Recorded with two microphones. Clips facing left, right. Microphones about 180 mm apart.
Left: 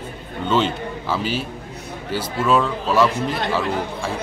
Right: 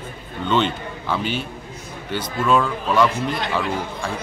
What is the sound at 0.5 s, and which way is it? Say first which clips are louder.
A man's voice: left 1 dB; 5° left (ahead or behind).